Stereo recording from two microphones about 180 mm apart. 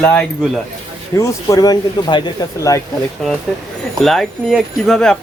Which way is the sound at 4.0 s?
Centre (ahead or behind).